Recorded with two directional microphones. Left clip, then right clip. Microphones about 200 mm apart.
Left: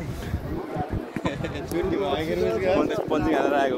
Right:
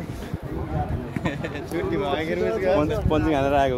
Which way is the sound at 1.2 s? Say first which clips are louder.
Right 1 dB; 30° right (ahead or behind).